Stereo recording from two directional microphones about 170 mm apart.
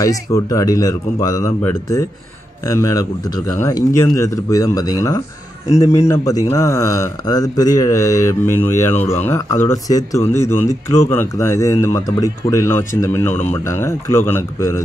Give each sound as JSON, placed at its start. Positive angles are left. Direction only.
{"t": 0.0, "sound": "speech", "side_deg": 20}